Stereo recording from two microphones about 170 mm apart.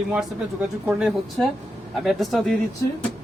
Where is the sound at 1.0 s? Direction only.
Centre (ahead or behind).